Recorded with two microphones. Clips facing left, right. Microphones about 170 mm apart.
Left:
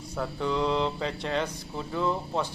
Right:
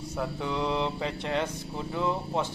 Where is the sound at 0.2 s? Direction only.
15° right (ahead or behind).